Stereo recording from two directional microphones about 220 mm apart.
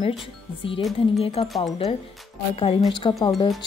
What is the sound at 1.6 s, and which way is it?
Speech, 25° left (ahead or behind).